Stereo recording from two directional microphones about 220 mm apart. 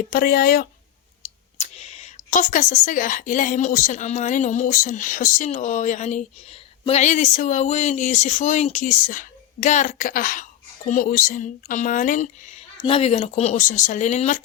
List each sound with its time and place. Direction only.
0.1 s speech: 45° left (ahead or behind)
1.5 s speech: 30° left (ahead or behind)